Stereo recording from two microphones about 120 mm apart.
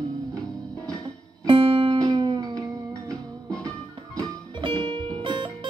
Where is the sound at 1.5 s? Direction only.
45° right (ahead or behind).